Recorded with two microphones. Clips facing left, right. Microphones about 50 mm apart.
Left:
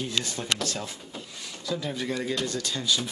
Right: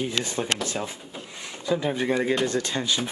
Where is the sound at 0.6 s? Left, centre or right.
Right.